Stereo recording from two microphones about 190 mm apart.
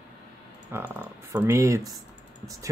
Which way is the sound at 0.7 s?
10° right (ahead or behind).